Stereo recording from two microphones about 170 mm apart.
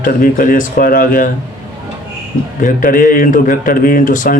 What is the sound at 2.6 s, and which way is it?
A man's voice, 55° left (ahead or behind).